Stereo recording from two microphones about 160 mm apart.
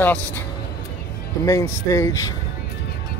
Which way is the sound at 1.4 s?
20° left (ahead or behind).